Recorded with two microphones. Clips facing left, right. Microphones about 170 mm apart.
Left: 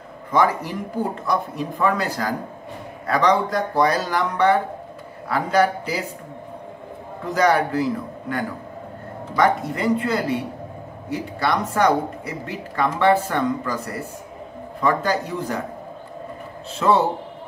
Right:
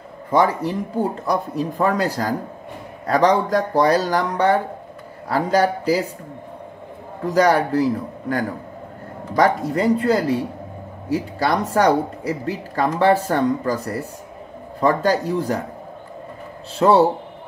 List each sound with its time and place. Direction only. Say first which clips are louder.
1.2 s speech: right 2 dB; 35° right (ahead or behind)
7.2 s speech: right 2 dB; 35° right (ahead or behind)
16.7 s speech: right 4 dB; 35° right (ahead or behind)